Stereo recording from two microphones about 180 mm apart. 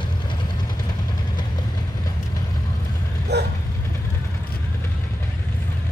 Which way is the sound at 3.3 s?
70° right (ahead or behind).